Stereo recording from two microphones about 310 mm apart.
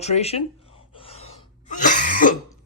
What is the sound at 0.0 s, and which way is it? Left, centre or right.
Sneeze, left.